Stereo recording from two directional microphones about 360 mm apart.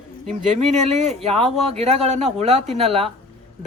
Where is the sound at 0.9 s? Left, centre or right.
Centre.